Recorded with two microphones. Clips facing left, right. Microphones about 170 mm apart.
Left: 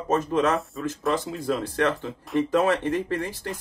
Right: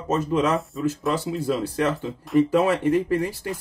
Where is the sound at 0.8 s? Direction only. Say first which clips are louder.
Right 2 dB; 10° right (ahead or behind).